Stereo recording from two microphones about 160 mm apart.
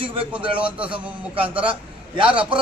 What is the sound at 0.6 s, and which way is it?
Speech, 5° right (ahead or behind).